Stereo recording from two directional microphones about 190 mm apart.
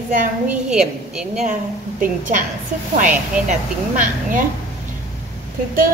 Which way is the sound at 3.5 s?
45° right (ahead or behind).